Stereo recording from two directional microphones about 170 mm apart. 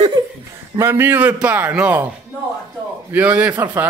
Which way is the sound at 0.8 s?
15° right (ahead or behind).